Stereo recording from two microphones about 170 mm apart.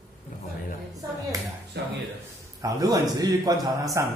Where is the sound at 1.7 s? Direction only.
75° right (ahead or behind).